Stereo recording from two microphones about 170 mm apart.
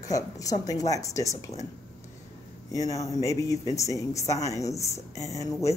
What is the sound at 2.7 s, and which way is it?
A woman's voice, 20° left (ahead or behind).